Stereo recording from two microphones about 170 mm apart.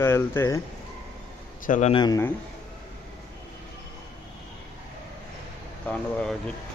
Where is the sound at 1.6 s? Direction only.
45° left (ahead or behind).